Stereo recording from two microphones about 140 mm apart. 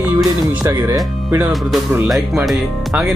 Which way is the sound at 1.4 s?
Centre (ahead or behind).